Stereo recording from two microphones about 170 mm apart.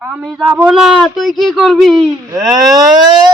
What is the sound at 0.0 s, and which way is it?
Speech, centre (ahead or behind).